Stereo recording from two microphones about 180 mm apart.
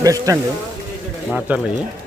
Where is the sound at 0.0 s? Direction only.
20° right (ahead or behind).